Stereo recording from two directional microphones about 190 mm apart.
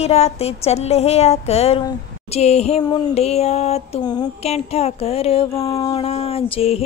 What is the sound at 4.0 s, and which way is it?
Speech, 20° left (ahead or behind).